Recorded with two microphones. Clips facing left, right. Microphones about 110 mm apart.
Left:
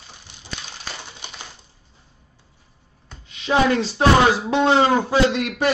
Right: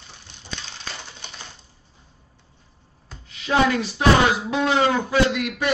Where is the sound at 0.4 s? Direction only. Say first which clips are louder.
Left 1 dB; 10° left (ahead or behind).